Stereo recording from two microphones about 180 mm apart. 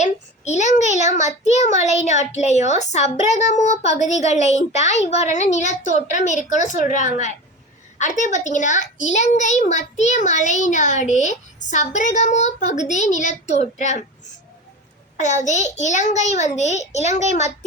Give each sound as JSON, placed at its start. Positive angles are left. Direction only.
{"t": 0.0, "sound": "a child's voice", "side_deg": 40}
{"t": 15.2, "sound": "a child's voice", "side_deg": 40}